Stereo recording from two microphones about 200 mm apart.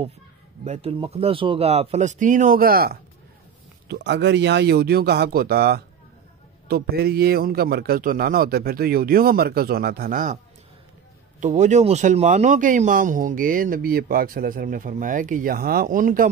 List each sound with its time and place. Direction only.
0.7 s speech: 25° right (ahead or behind); by 3.0 s 50° right (ahead or behind)
3.9 s speech: 60° right (ahead or behind); by 16.3 s 45° right (ahead or behind)